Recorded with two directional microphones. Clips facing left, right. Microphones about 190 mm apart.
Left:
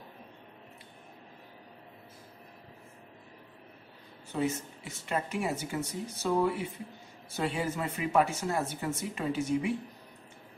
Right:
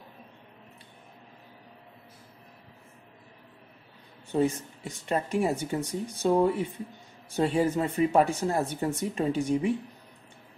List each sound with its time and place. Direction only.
4.3 s a woman's voice: 30° right (ahead or behind)